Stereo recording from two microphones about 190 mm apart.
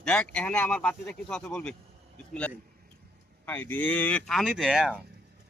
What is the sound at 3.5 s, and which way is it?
Speech, 10° left (ahead or behind).